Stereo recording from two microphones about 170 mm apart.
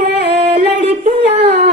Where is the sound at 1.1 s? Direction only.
40° right (ahead or behind).